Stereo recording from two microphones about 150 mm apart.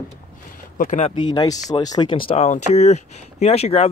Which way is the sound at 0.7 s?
60° left (ahead or behind).